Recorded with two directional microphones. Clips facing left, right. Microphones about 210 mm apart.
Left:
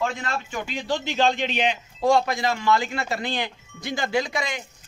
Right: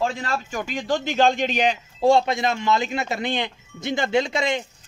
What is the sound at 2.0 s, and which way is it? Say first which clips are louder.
A man's voice: right 2 dB; 25° right (ahead or behind).